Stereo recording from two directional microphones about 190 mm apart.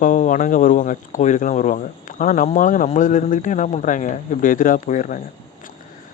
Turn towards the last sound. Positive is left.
turn(degrees=40)  # may be behind; listen again after turning